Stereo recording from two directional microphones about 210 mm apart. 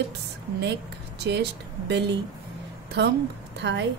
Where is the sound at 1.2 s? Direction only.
55° right (ahead or behind).